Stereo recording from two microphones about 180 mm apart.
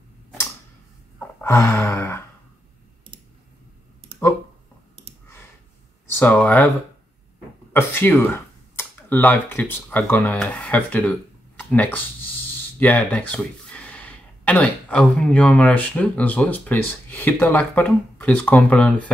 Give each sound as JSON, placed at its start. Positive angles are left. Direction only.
{"t": 1.4, "sound": "sigh", "side_deg": 15}
{"t": 6.1, "sound": "speech", "side_deg": 10}
{"t": 7.7, "sound": "speech", "side_deg": 10}